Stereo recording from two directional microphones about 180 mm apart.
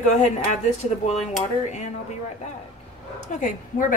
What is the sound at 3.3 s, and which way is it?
Speech, 45° left (ahead or behind).